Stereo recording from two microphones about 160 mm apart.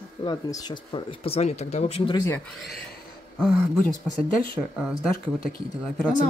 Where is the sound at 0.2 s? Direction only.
25° left (ahead or behind).